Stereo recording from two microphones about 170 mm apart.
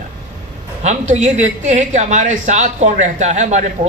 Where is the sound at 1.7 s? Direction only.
45° right (ahead or behind).